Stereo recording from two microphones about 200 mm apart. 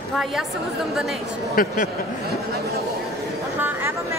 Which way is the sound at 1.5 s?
40° left (ahead or behind).